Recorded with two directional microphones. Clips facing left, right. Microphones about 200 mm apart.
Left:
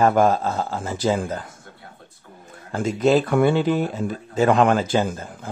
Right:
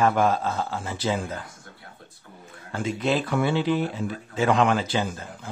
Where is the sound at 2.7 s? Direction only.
45° left (ahead or behind).